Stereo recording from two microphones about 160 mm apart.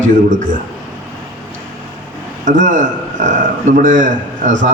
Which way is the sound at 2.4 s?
55° right (ahead or behind).